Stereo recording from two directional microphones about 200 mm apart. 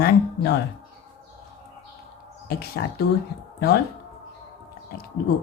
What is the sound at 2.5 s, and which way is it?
Speech, 50° left (ahead or behind).